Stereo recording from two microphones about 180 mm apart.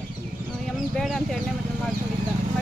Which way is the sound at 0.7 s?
Centre (ahead or behind).